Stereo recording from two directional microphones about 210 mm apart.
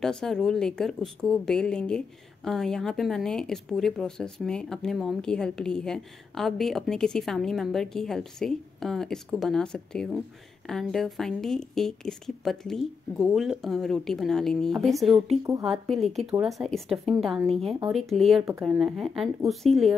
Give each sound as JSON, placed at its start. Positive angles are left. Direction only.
{"t": 0.0, "sound": "a woman's voice", "side_deg": 0}
{"t": 17.5, "sound": "speech", "side_deg": -30}
{"t": 17.9, "sound": "a woman's voice", "side_deg": 0}